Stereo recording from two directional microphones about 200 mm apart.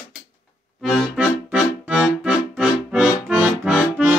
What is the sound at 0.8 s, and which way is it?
Accordion, 5° right (ahead or behind).